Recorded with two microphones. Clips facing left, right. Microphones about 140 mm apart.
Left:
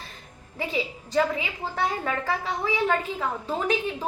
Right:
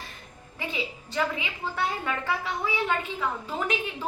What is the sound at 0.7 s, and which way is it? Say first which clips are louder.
A woman's voice: left 7 dB; 40° left (ahead or behind).